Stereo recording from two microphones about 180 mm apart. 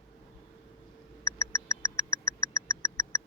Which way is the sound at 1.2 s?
15° left (ahead or behind).